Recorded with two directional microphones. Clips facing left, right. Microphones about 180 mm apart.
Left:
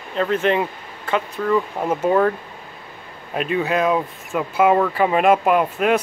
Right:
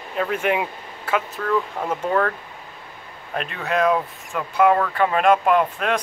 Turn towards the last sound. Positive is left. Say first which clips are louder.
# left 2 dB
turn(degrees=5)  # may be behind; listen again after turning